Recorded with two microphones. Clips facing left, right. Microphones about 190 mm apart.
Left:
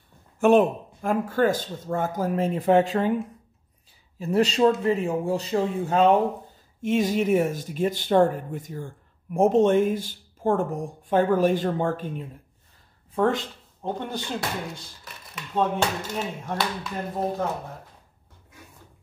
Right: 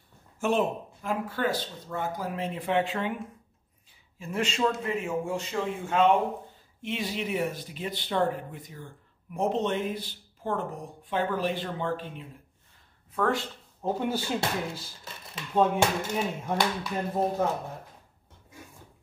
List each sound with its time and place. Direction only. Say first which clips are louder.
0.4 s speech: left 8 dB; 55° left (ahead or behind)
4.2 s speech: left 8 dB; 35° left (ahead or behind)
13.1 s speech: left 4 dB; 25° left (ahead or behind)
13.8 s speech: right 2 dB; 5° right (ahead or behind)